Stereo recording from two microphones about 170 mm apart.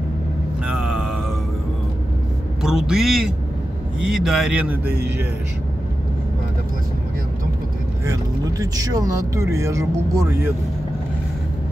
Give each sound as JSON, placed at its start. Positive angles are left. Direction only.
{"t": 0.7, "sound": "mantra", "side_deg": 0}
{"t": 2.6, "sound": "a man's voice", "side_deg": -5}
{"t": 8.0, "sound": "speech", "side_deg": -20}